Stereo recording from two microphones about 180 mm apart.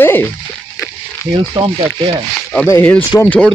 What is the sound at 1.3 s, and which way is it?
Rub, 25° right (ahead or behind).